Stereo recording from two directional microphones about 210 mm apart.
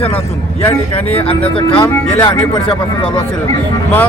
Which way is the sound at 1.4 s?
25° left (ahead or behind).